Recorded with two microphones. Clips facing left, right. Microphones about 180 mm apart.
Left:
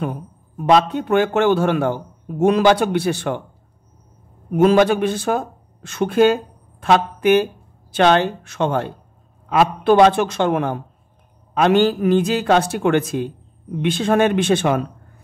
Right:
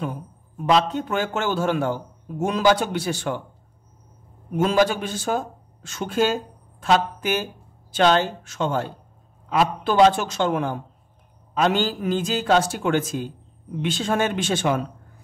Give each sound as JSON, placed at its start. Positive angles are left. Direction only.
{"t": 0.7, "sound": "a man's voice", "side_deg": 55}
{"t": 4.6, "sound": "a man's voice", "side_deg": 60}